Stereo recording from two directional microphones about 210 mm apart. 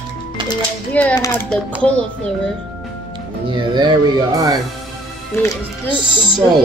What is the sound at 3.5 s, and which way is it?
Speech, 20° right (ahead or behind).